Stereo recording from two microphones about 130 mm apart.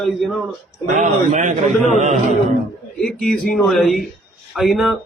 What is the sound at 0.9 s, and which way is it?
Speech, 65° right (ahead or behind).